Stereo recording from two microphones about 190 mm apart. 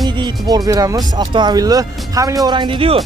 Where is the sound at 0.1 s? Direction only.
20° right (ahead or behind).